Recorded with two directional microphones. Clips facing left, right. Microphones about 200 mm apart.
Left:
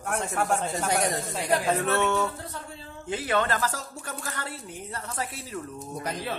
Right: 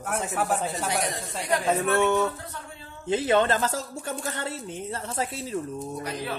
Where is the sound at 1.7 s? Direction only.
15° right (ahead or behind).